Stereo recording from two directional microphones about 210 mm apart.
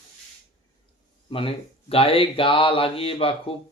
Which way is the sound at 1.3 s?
25° left (ahead or behind).